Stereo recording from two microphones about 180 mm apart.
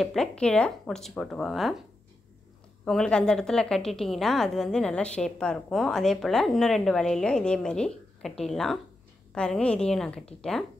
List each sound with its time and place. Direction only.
0.0 s a woman's voice: centre (ahead or behind)
2.8 s a woman's voice: 5° left (ahead or behind)